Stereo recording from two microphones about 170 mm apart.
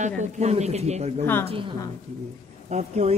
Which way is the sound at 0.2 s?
40° right (ahead or behind).